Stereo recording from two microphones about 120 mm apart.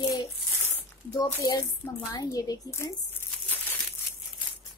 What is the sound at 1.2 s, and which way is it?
Speech, 30° left (ahead or behind).